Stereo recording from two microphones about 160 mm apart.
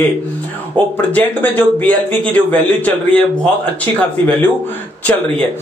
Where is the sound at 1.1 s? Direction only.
10° left (ahead or behind).